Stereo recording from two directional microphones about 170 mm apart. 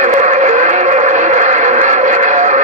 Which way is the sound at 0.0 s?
45° right (ahead or behind).